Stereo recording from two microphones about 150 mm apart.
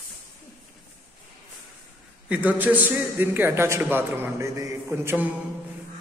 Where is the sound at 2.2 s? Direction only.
10° right (ahead or behind).